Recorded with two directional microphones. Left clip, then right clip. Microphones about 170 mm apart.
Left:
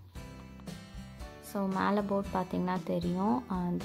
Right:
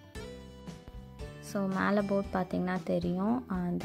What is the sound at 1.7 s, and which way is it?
Speech, 15° right (ahead or behind).